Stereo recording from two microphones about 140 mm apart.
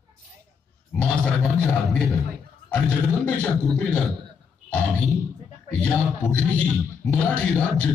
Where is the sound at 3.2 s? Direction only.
10° left (ahead or behind).